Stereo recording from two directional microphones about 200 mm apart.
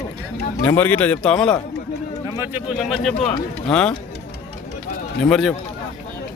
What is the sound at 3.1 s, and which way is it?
Speech, 30° left (ahead or behind).